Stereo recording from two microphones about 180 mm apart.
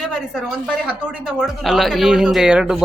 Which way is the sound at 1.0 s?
5° right (ahead or behind).